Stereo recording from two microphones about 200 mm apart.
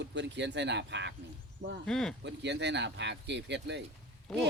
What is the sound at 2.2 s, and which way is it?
Speech, 60° right (ahead or behind).